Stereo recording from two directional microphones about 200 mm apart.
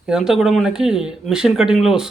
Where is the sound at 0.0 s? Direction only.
5° right (ahead or behind).